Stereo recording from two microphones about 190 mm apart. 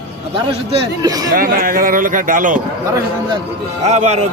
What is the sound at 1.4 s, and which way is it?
Speech, 50° right (ahead or behind).